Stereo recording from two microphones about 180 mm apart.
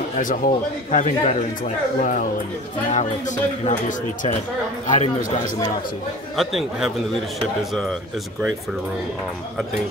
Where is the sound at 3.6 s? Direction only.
45° left (ahead or behind).